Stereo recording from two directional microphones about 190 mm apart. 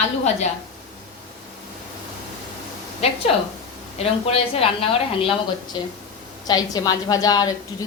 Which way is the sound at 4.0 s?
30° left (ahead or behind).